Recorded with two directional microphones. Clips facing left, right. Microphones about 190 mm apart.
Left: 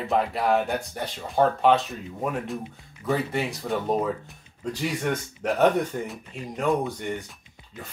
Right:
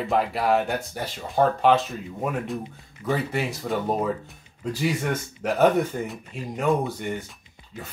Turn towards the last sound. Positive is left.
turn(degrees=-5)  # may be behind; listen again after turning